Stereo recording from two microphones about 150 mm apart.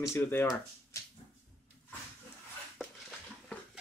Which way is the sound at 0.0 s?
15° left (ahead or behind).